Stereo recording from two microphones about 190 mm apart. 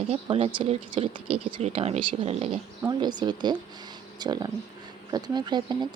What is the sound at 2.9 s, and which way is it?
Speech, 25° right (ahead or behind).